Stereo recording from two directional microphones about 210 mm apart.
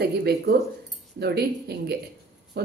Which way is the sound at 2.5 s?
50° right (ahead or behind).